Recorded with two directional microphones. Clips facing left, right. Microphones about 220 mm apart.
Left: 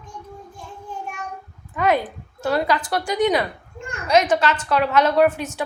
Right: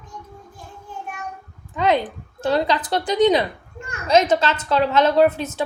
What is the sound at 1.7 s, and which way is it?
A woman's voice, 20° right (ahead or behind).